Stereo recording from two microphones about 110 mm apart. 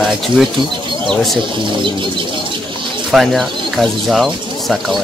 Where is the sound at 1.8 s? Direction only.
45° right (ahead or behind).